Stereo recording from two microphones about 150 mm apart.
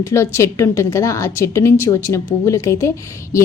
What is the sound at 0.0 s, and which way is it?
A woman's voice, 20° left (ahead or behind).